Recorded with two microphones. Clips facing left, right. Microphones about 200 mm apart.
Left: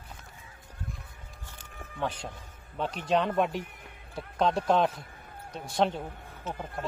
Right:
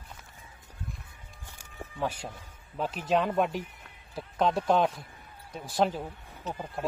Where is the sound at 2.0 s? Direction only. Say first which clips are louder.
Even; 10° right (ahead or behind).